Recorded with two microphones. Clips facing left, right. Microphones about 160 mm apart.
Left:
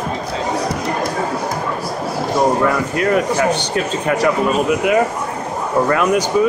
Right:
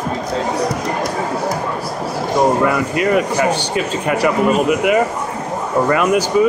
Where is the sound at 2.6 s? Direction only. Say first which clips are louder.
Right 1 dB; 5° right (ahead or behind).